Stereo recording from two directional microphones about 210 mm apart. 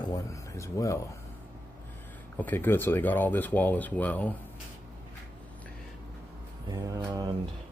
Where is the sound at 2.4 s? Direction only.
10° left (ahead or behind).